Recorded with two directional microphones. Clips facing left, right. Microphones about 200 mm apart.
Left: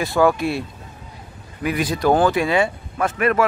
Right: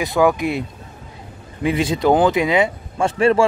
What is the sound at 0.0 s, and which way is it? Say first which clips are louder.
Speech: right 1 dB; 15° right (ahead or behind).